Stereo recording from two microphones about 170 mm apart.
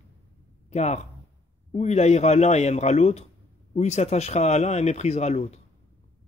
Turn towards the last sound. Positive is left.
turn(degrees=40)  # may be behind; listen again after turning